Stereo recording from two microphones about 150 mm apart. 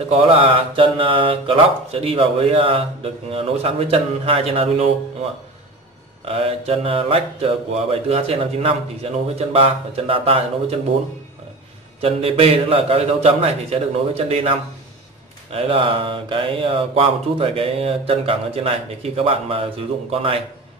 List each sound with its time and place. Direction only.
0.1 s mantra: 35° right (ahead or behind)
6.2 s mantra: 40° right (ahead or behind)
12.0 s mantra: 40° right (ahead or behind)